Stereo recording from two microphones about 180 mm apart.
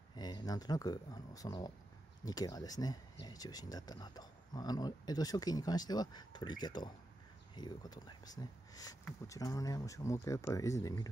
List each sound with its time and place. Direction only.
0.1 s speech: 25° left (ahead or behind)